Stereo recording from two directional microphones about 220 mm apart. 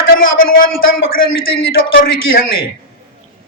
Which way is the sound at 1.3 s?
60° left (ahead or behind).